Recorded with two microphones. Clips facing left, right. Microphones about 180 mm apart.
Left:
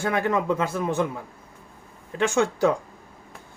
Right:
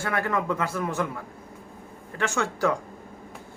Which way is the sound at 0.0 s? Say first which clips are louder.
Left 3 dB; 20° left (ahead or behind).